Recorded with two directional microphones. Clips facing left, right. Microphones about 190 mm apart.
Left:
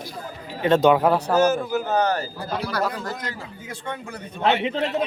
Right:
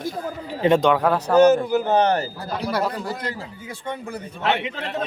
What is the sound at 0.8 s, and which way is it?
Speech, 5° left (ahead or behind).